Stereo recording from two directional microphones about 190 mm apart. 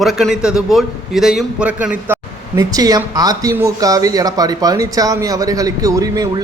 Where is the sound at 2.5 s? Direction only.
20° right (ahead or behind).